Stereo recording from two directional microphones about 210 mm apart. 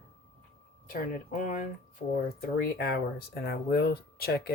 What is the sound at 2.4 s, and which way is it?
Speech, 45° left (ahead or behind).